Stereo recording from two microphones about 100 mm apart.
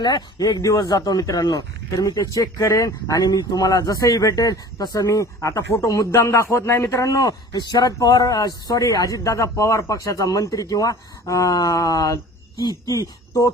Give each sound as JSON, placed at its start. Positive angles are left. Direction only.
{"t": 0.0, "sound": "speech", "side_deg": 45}